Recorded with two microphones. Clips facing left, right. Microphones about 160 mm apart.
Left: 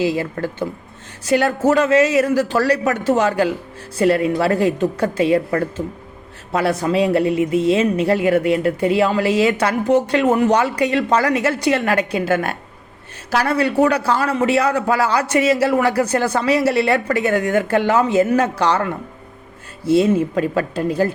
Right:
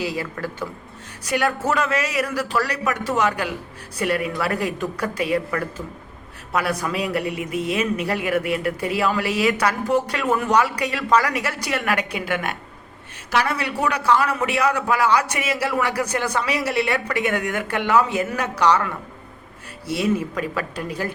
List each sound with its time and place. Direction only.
0.0 s a man's voice: 25° left (ahead or behind)